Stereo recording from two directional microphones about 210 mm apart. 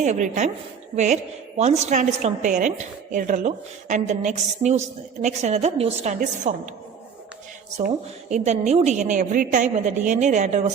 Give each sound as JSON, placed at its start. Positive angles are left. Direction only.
{"t": 0.0, "sound": "a woman's voice", "side_deg": -35}
{"t": 8.3, "sound": "a woman's voice", "side_deg": -30}